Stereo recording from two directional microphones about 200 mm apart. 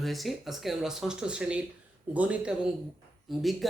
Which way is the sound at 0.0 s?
Centre (ahead or behind).